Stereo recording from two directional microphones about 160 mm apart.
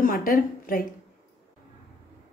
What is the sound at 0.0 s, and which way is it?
Speech, 60° left (ahead or behind).